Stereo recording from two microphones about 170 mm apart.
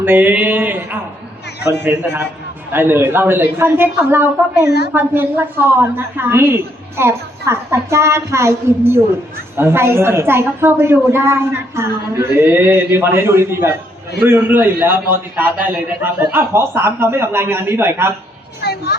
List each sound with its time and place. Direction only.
0.0 s a woman's voice: 10° right (ahead or behind)
18.6 s a child's voice: 70° left (ahead or behind)